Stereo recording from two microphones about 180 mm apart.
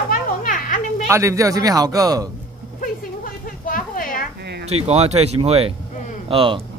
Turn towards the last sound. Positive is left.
turn(degrees=-30)  # may be behind; listen again after turning